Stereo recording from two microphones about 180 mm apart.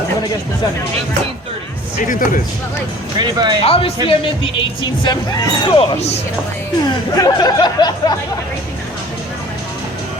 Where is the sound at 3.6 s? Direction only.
35° left (ahead or behind).